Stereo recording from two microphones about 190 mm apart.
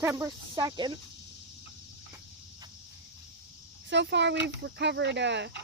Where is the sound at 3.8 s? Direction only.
70° right (ahead or behind).